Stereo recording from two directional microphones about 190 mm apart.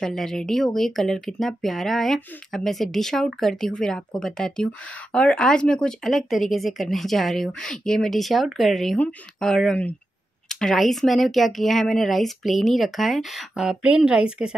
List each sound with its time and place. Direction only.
0.0 s speech: centre (ahead or behind)